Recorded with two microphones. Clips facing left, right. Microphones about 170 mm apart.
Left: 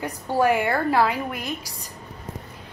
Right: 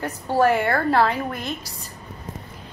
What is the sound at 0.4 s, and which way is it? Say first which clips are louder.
A woman's voice: right 1 dB; 15° left (ahead or behind).